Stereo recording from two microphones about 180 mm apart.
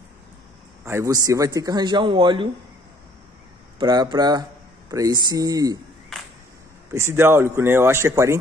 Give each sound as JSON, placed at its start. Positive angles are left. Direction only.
{"t": 0.8, "sound": "speech", "side_deg": -15}
{"t": 3.8, "sound": "speech", "side_deg": -25}
{"t": 6.9, "sound": "speech", "side_deg": -15}